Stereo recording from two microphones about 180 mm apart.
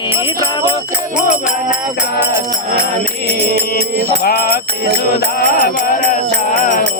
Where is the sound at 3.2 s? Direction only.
65° right (ahead or behind).